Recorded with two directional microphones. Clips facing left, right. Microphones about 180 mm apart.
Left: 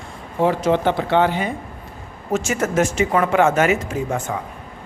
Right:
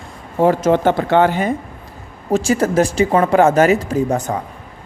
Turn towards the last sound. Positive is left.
turn(degrees=-40)  # may be behind; listen again after turning